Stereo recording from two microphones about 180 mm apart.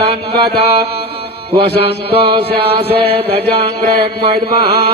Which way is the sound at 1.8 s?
35° right (ahead or behind).